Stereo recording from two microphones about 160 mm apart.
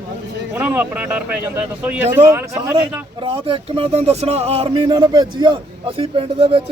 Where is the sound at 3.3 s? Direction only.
35° right (ahead or behind).